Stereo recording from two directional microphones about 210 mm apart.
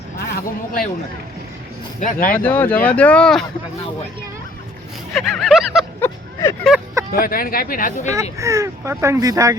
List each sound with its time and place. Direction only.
0.3 s speech: 45° left (ahead or behind)
2.0 s speech: 40° left (ahead or behind)
2.3 s speech: 10° left (ahead or behind)
5.1 s a sound: centre (ahead or behind)
6.7 s speech: centre (ahead or behind)
7.1 s speech: 45° left (ahead or behind)
8.1 s speech: 15° right (ahead or behind)